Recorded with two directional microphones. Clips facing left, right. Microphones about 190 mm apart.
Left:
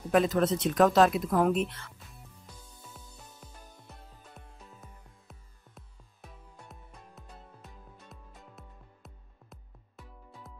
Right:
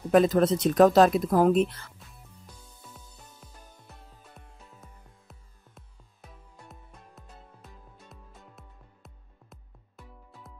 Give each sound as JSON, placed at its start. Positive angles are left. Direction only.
{"t": 0.1, "sound": "speech", "side_deg": -40}
{"t": 2.9, "sound": "music", "side_deg": 0}
{"t": 5.3, "sound": "music", "side_deg": 0}